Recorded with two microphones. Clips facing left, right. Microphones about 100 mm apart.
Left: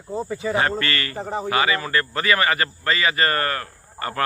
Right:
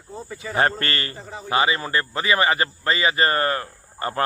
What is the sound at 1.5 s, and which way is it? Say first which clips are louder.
A man's voice: right 2 dB; 25° right (ahead or behind).